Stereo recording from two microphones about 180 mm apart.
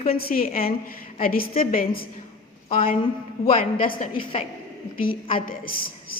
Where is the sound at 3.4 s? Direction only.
35° left (ahead or behind).